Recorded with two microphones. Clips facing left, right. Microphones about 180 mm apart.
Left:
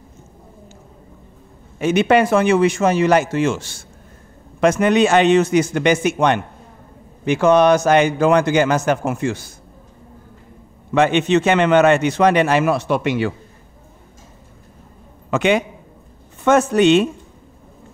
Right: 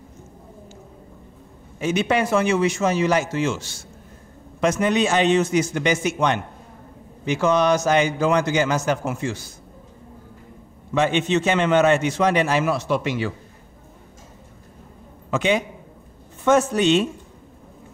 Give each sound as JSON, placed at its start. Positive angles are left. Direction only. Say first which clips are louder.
{"t": 1.8, "sound": "a man's voice", "louder": "left 6 dB", "side_deg": 60}
{"t": 10.9, "sound": "a man's voice", "louder": "left 5 dB", "side_deg": 65}
{"t": 15.3, "sound": "a man's voice", "louder": "left 4 dB", "side_deg": 65}